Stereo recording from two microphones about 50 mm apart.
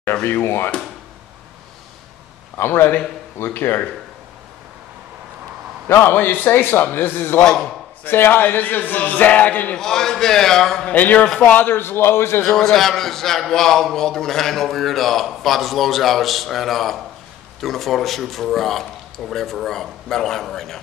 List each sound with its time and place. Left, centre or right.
0.1 s a man's voice: left
2.5 s a man's voice: left
5.9 s a man's voice: left
7.3 s a man's voice: centre
8.0 s a man's voice: left
9.8 s a man's voice: centre
10.9 s a man's voice: left
11.5 s a man's voice: left
12.4 s a man's voice: centre